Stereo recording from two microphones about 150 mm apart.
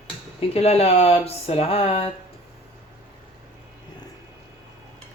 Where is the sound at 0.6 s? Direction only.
45° left (ahead or behind).